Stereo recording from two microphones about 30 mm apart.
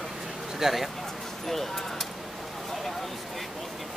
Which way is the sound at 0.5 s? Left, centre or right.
Centre.